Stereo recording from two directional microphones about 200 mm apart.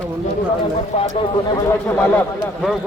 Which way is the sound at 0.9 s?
30° left (ahead or behind).